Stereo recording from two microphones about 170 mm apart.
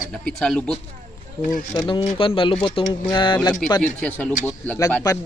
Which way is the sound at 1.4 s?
50° left (ahead or behind).